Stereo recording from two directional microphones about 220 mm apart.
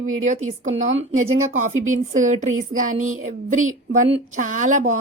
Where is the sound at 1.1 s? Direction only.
70° right (ahead or behind).